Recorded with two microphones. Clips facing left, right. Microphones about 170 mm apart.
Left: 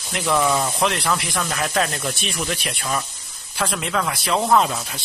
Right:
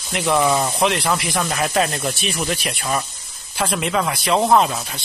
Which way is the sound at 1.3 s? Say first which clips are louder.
Right 3 dB; 15° right (ahead or behind).